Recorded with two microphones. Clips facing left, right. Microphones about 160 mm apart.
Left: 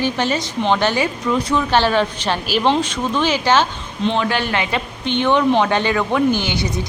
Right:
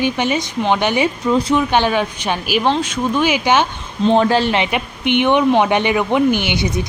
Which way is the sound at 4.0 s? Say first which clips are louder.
Right 6 dB; 40° right (ahead or behind).